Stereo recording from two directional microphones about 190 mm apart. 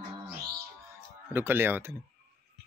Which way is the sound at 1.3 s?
10° right (ahead or behind).